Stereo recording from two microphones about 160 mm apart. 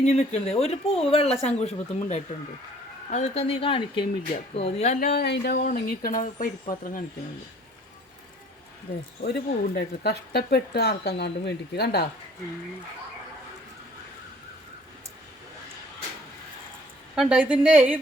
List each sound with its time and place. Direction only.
0.0 s speech: 40° left (ahead or behind)
9.2 s speech: 90° left
17.2 s a woman's voice: 5° right (ahead or behind)